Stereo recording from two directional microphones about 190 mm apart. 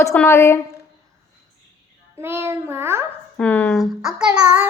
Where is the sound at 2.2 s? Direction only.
10° right (ahead or behind).